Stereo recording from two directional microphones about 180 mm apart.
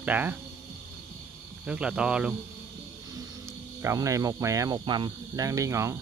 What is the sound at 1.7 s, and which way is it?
Speech, 5° right (ahead or behind).